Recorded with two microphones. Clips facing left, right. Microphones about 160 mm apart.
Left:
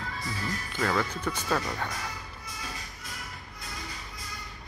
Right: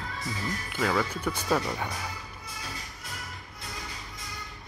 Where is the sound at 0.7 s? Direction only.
5° right (ahead or behind).